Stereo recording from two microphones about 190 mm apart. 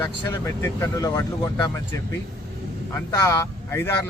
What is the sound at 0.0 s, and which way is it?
Speech, 15° left (ahead or behind).